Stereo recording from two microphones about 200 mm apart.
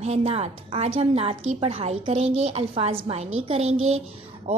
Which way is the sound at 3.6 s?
90° right.